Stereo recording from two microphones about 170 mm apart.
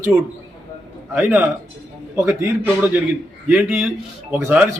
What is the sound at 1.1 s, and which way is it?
Speech, 10° right (ahead or behind).